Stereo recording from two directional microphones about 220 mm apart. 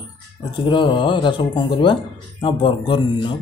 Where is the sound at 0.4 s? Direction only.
20° left (ahead or behind).